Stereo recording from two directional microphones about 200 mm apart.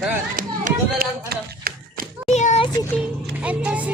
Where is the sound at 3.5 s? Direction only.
5° right (ahead or behind).